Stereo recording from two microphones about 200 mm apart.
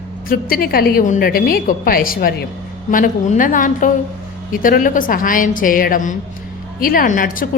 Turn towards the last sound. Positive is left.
turn(degrees=45)  # may be behind; listen again after turning